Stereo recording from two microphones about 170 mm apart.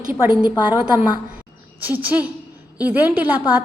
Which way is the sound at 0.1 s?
10° right (ahead or behind).